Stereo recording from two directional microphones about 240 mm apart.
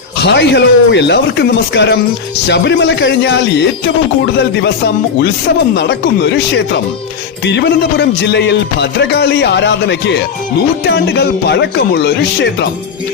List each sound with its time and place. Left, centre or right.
0.2 s music: left
5.7 s music: left